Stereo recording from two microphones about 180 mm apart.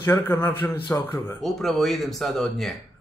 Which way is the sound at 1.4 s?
Centre (ahead or behind).